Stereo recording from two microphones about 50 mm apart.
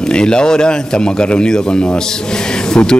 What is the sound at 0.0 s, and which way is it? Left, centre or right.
A man's voice, centre.